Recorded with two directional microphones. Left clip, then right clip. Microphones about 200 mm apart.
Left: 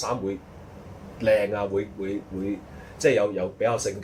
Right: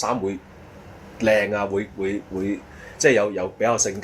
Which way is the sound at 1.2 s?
40° right (ahead or behind).